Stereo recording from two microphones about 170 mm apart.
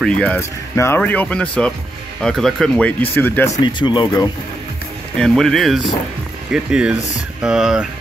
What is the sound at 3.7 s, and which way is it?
Speech, 25° left (ahead or behind).